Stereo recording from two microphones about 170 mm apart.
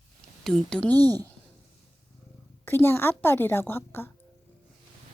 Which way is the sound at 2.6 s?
15° left (ahead or behind).